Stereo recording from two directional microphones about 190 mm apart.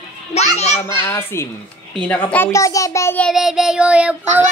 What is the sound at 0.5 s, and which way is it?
Speech, 35° left (ahead or behind).